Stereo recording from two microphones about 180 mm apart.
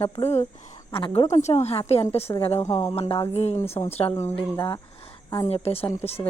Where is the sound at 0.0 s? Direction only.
35° left (ahead or behind).